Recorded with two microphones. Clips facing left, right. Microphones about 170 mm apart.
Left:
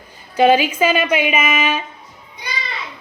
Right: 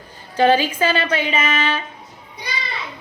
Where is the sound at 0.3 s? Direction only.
10° left (ahead or behind).